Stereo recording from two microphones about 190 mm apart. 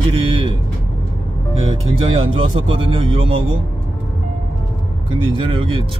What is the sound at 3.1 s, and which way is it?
Speech, 30° right (ahead or behind).